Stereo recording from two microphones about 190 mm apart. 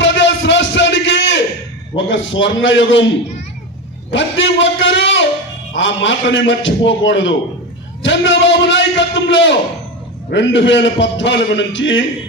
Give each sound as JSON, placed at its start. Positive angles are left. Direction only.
{"t": 0.0, "sound": "a sound", "side_deg": 75}
{"t": 2.0, "sound": "a man's voice", "side_deg": 75}
{"t": 4.1, "sound": "a man's voice", "side_deg": 75}